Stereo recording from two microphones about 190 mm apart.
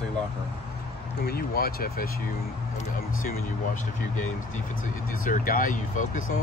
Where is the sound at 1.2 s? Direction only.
55° left (ahead or behind).